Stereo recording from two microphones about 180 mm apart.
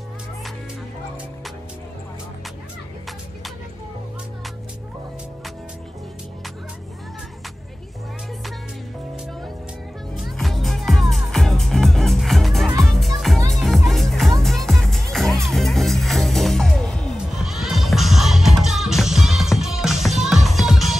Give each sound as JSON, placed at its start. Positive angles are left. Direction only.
{"t": 10.2, "sound": "music", "side_deg": 0}